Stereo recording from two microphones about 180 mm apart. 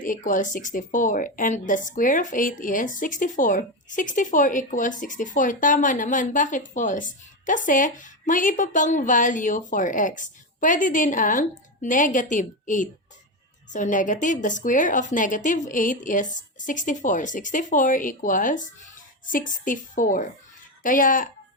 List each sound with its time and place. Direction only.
0.0 s speech: 45° left (ahead or behind)